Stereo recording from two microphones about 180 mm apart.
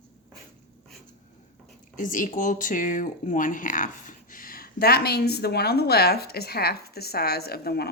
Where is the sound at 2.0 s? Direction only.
45° left (ahead or behind).